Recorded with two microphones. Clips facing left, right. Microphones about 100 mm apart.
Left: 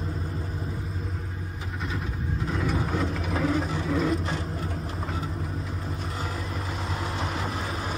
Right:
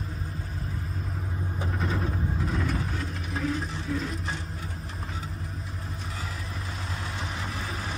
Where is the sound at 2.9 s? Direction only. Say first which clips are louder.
Left 6 dB; 90° left.